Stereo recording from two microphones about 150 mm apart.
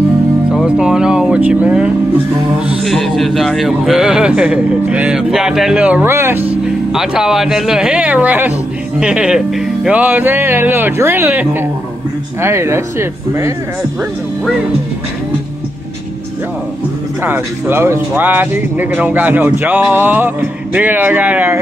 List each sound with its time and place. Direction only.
0.5 s music: 5° right (ahead or behind)
2.8 s speech: centre (ahead or behind); by 12.8 s 15° right (ahead or behind)
17.2 s speech: 15° right (ahead or behind)